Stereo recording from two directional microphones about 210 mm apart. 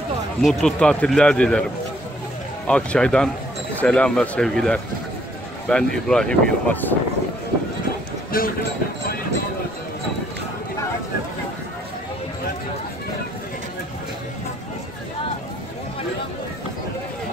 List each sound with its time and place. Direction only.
0.4 s a man's voice: centre (ahead or behind)
2.7 s a man's voice: 5° left (ahead or behind)
8.3 s speech: 45° left (ahead or behind)